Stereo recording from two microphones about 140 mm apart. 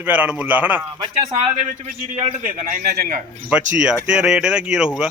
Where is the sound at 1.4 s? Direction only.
55° right (ahead or behind).